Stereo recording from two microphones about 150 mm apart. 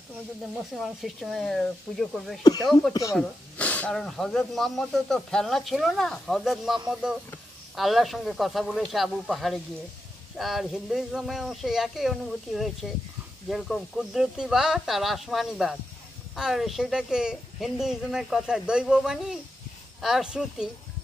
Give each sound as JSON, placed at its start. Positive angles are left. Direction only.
{"t": 0.7, "sound": "speech", "side_deg": 0}
{"t": 2.9, "sound": "speech", "side_deg": 20}
{"t": 3.2, "sound": "speech", "side_deg": 10}